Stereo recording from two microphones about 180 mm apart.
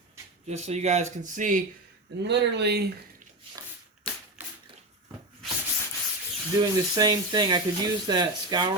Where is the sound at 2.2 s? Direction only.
70° right (ahead or behind).